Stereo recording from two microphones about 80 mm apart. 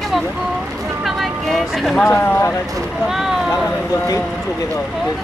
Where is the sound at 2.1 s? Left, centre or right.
Left.